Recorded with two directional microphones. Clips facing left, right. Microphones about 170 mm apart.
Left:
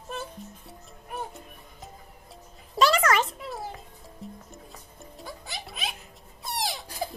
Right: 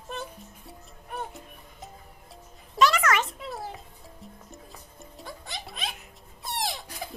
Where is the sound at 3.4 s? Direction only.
Centre (ahead or behind).